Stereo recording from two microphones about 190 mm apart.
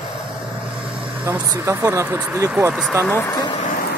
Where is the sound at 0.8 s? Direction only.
5° right (ahead or behind).